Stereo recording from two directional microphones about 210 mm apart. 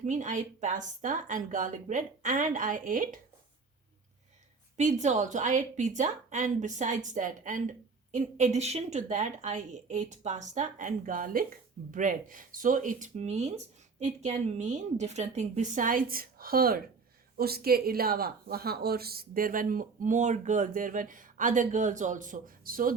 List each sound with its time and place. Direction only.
0.0 s a woman's voice: 35° right (ahead or behind)
4.8 s a woman's voice: 35° right (ahead or behind)